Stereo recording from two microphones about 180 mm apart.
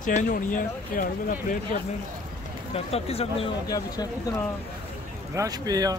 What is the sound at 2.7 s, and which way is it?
Speech, 35° left (ahead or behind).